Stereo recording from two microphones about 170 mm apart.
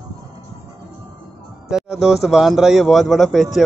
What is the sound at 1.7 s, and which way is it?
Speech, 5° right (ahead or behind).